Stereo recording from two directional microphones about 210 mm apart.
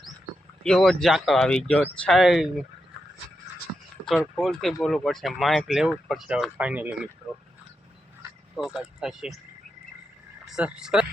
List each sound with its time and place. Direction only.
0.6 s speech: 5° left (ahead or behind)
4.4 s speech: centre (ahead or behind)
8.5 s speech: 5° right (ahead or behind)
10.4 s speech: 5° right (ahead or behind)